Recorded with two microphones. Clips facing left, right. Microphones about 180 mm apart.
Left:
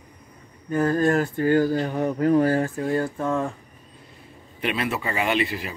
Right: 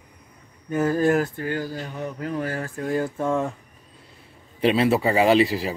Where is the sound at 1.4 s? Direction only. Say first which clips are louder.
Left 9 dB; 50° left (ahead or behind).